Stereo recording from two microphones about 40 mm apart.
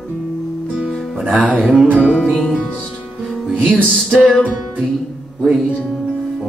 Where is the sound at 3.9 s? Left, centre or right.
Centre.